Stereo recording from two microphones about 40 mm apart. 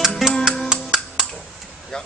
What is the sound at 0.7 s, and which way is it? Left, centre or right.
Music, centre.